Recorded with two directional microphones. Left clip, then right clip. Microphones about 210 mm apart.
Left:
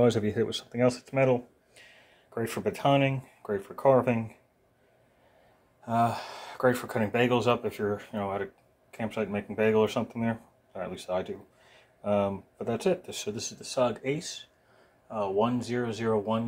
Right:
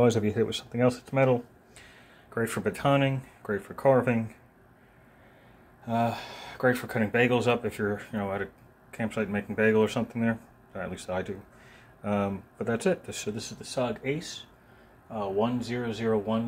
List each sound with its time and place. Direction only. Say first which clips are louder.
0.0 s speech: right 1 dB; 5° left (ahead or behind)
5.9 s speech: left 2 dB; 15° left (ahead or behind)